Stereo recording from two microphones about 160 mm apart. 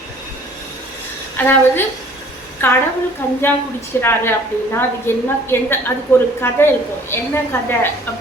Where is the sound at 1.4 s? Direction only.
10° left (ahead or behind).